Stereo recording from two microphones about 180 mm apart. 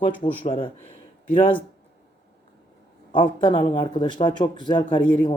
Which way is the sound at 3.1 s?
25° left (ahead or behind).